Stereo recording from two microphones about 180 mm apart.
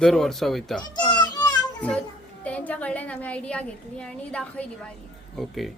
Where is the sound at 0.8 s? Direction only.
20° left (ahead or behind).